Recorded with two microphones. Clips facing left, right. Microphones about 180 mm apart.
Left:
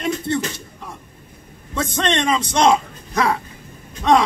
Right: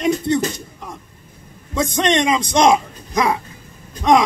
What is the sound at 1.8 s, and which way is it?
A man's voice, 15° right (ahead or behind).